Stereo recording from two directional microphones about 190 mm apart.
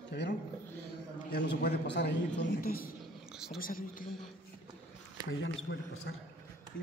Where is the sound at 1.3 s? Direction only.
60° left (ahead or behind).